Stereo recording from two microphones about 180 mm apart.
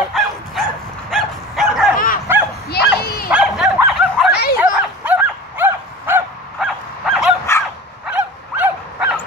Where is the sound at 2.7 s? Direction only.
60° left (ahead or behind).